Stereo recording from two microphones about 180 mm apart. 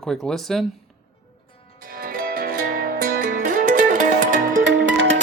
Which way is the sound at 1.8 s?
55° right (ahead or behind).